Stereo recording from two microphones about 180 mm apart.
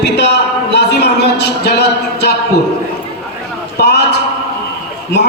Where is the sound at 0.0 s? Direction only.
70° left (ahead or behind).